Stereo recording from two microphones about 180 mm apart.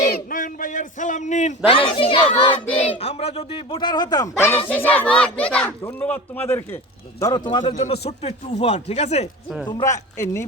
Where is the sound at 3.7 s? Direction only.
25° left (ahead or behind).